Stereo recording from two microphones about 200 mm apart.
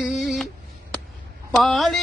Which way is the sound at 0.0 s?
Centre (ahead or behind).